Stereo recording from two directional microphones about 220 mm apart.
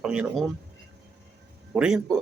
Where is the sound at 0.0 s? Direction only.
5° right (ahead or behind).